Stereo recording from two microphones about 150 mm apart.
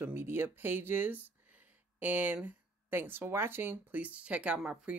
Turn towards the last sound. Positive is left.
turn(degrees=-5)  # may be behind; listen again after turning